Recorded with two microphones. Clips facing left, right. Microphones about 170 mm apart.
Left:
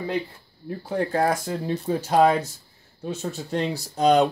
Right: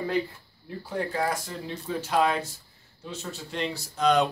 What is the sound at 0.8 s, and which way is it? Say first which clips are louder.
Speech: left 6 dB; 50° left (ahead or behind).